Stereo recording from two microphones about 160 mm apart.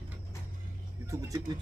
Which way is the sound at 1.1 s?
20° right (ahead or behind).